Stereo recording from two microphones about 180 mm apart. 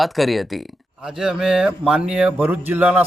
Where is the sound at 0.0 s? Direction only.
Centre (ahead or behind).